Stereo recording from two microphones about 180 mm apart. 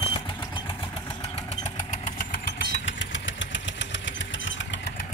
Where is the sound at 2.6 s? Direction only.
90° left.